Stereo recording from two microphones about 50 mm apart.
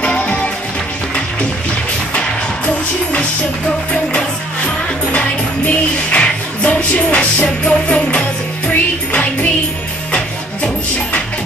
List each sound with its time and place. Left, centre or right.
0.0 s music: left
2.1 s music: left
6.0 s music: left